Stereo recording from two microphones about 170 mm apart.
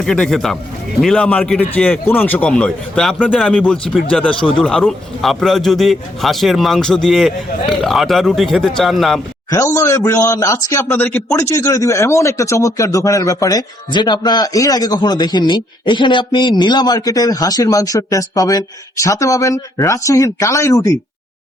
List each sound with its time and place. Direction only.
0.0 s a man's voice: 5° left (ahead or behind)
4.2 s speech: 30° left (ahead or behind)
4.6 s a man's voice: 5° left (ahead or behind)
9.5 s a man's voice: 20° left (ahead or behind)